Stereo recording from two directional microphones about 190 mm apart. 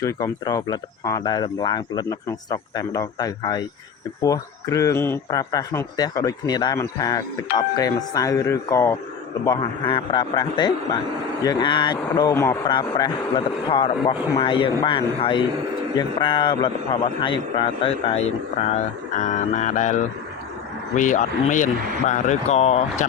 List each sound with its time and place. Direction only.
0.0 s speech: 15° left (ahead or behind)
9.6 s a man's voice: 25° left (ahead or behind)